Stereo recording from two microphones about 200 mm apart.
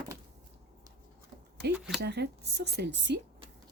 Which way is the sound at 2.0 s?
55° right (ahead or behind).